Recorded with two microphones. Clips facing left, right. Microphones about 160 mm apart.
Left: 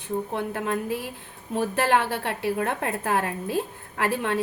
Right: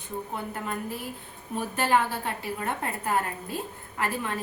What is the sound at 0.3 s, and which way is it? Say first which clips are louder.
A woman's voice: left 4 dB; 90° left.